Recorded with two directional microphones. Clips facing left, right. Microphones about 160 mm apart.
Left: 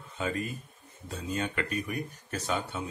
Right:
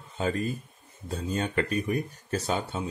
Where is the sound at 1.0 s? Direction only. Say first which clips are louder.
Right 3 dB; 35° right (ahead or behind).